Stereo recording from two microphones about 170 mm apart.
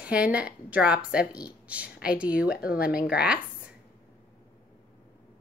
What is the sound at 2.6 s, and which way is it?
Speech, 60° left (ahead or behind).